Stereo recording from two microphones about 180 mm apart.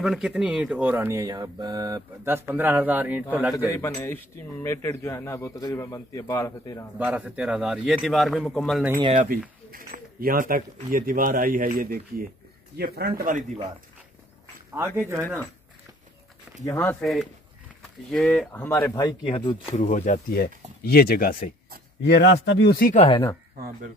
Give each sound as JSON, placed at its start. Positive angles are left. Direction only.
{"t": 0.0, "sound": "speech", "side_deg": -5}
{"t": 3.5, "sound": "speech", "side_deg": 15}
{"t": 7.0, "sound": "a man's voice", "side_deg": -5}
{"t": 9.7, "sound": "a man's voice", "side_deg": -55}
{"t": 13.2, "sound": "speech", "side_deg": -45}
{"t": 15.0, "sound": "speech", "side_deg": -15}
{"t": 16.6, "sound": "speech", "side_deg": 15}
{"t": 17.0, "sound": "a man's voice", "side_deg": 0}
{"t": 18.9, "sound": "speech", "side_deg": 25}
{"t": 19.7, "sound": "speech", "side_deg": 45}
{"t": 22.0, "sound": "speech", "side_deg": 70}
{"t": 22.9, "sound": "speech", "side_deg": 30}